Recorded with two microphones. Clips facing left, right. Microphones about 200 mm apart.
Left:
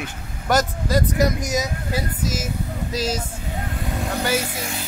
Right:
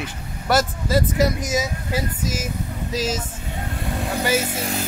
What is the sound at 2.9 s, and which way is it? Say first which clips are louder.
Speech: right 1 dB; 10° right (ahead or behind).